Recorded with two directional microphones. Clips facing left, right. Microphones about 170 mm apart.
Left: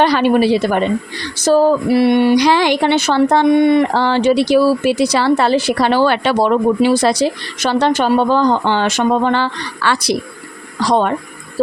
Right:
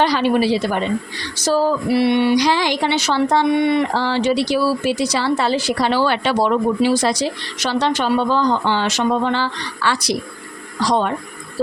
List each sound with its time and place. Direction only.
0.0 s speech: 55° left (ahead or behind)